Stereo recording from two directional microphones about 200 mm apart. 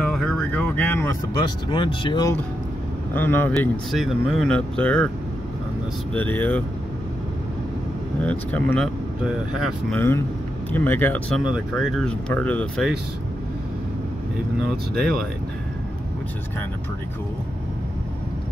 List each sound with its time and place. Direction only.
0.0 s a sound: 5° left (ahead or behind)
1.7 s speech: 25° left (ahead or behind)
3.2 s speech: 10° left (ahead or behind)
6.1 s speech: 10° left (ahead or behind)
8.3 s speech: 5° left (ahead or behind)